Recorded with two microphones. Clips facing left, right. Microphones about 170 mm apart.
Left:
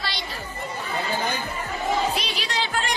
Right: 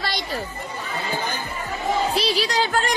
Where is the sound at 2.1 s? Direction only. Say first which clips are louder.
Right 7 dB; 35° right (ahead or behind).